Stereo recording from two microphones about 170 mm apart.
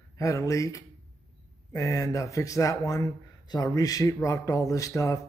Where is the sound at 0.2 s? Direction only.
20° left (ahead or behind).